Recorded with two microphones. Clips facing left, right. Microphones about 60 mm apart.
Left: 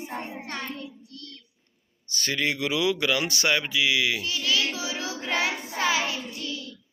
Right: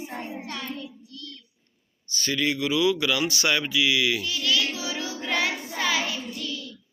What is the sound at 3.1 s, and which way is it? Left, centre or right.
Speech, left.